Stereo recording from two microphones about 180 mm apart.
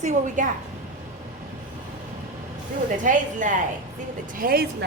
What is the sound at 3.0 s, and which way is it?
Speech, 45° right (ahead or behind).